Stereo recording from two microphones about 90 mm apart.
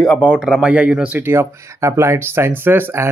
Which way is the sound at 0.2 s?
10° right (ahead or behind).